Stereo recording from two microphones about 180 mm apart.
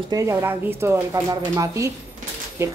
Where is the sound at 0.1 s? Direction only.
15° right (ahead or behind).